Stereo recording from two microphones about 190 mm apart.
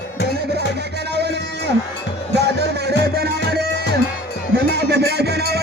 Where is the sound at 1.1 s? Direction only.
60° right (ahead or behind).